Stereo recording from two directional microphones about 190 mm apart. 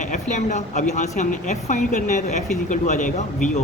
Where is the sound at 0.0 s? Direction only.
40° left (ahead or behind).